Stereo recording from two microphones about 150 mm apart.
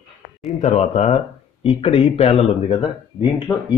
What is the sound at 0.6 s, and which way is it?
Speech, 55° left (ahead or behind).